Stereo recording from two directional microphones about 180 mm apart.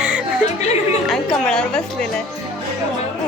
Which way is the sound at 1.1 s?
5° left (ahead or behind).